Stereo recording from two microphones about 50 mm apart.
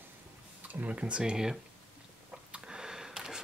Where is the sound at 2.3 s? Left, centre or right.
Centre.